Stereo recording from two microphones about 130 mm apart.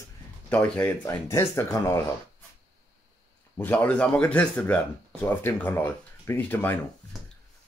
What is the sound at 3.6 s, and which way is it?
Speech, 10° left (ahead or behind).